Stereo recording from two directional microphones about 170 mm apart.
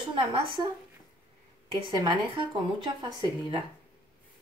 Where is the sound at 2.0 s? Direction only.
25° right (ahead or behind).